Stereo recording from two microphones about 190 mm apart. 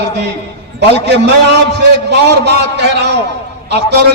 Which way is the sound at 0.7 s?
65° right (ahead or behind).